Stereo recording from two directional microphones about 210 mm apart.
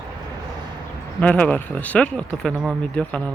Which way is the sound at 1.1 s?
5° left (ahead or behind).